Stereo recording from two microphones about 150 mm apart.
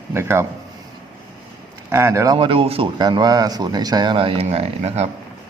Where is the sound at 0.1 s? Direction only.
15° right (ahead or behind).